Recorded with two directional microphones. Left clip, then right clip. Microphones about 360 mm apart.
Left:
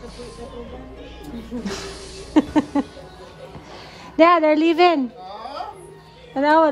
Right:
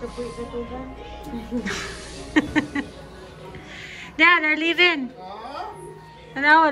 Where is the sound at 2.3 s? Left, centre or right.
Centre.